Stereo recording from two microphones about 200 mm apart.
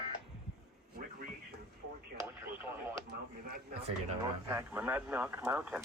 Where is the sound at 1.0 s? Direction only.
45° right (ahead or behind).